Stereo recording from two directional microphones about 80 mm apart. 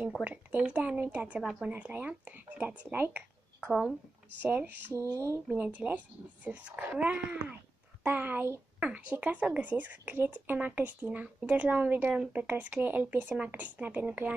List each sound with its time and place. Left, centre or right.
0.2 s speech: centre
4.9 s speech: right
5.5 s speech: centre